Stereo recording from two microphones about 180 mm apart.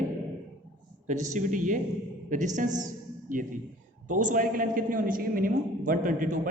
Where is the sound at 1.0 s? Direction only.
45° right (ahead or behind).